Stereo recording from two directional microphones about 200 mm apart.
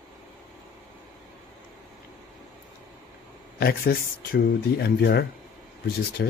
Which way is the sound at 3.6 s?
50° left (ahead or behind).